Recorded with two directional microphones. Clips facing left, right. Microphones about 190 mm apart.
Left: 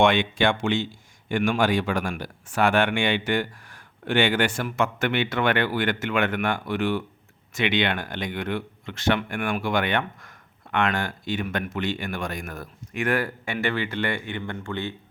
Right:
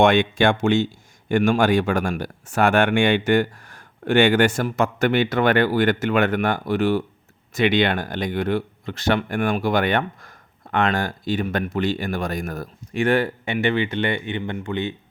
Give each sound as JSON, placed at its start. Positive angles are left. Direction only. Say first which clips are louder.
{"t": 0.0, "sound": "speech", "louder": "right 4 dB", "side_deg": -45}